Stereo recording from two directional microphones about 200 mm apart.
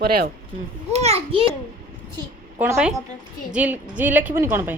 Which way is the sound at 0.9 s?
30° right (ahead or behind).